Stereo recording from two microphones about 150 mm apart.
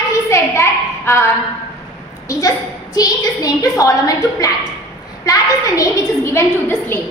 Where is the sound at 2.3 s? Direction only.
25° left (ahead or behind).